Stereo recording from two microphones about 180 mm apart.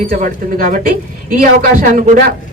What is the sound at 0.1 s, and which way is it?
A man's voice, 50° right (ahead or behind).